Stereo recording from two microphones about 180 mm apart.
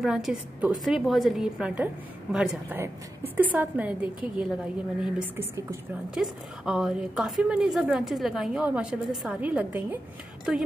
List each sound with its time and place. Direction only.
0.0 s a woman's voice: 5° right (ahead or behind)